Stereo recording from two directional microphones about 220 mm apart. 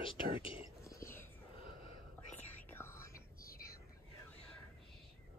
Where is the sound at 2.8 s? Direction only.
10° left (ahead or behind).